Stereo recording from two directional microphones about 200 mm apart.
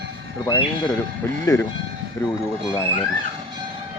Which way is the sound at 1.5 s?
20° left (ahead or behind).